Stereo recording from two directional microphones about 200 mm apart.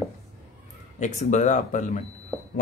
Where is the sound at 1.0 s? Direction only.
35° left (ahead or behind).